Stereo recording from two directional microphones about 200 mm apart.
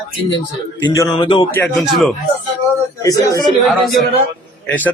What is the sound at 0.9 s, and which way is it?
Speech, 20° left (ahead or behind).